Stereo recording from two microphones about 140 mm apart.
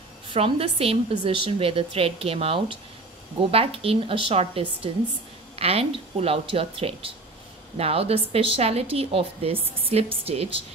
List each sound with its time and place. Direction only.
0.3 s speech: 45° right (ahead or behind)